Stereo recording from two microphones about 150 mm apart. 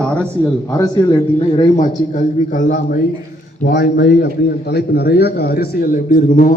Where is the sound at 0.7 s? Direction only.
25° left (ahead or behind).